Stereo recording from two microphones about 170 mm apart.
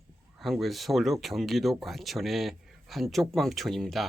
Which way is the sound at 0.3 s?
Centre (ahead or behind).